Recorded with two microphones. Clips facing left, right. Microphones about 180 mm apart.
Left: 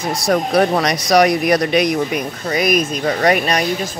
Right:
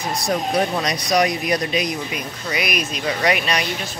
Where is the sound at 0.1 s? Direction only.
80° left.